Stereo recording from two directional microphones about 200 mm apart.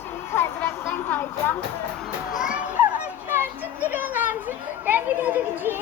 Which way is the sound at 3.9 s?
10° right (ahead or behind).